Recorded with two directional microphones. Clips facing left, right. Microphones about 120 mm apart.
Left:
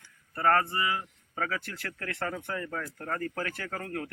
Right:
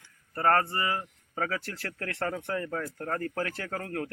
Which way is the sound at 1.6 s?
30° right (ahead or behind).